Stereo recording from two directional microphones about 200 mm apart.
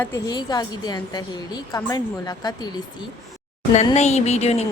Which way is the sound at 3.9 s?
35° left (ahead or behind).